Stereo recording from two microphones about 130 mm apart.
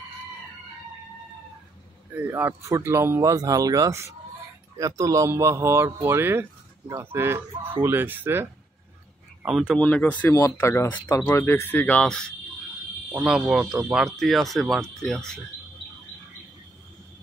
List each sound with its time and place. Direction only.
2.1 s speech: 15° right (ahead or behind)
9.4 s speech: 5° right (ahead or behind)
9.8 s speech: 10° left (ahead or behind)